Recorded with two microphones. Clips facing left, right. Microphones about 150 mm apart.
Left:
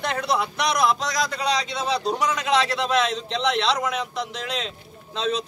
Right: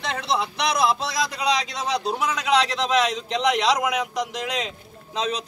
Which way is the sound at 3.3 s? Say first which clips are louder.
Right 2 dB; 5° right (ahead or behind).